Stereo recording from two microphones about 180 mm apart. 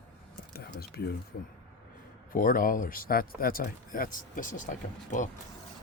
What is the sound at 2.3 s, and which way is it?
Speech, 50° left (ahead or behind).